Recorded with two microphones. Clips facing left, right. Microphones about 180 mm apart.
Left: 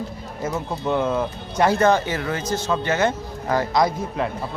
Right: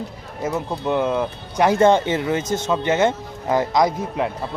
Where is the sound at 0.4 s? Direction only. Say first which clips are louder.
Right 2 dB; 15° right (ahead or behind).